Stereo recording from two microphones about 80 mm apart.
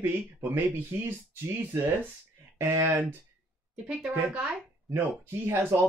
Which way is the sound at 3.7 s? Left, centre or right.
Centre.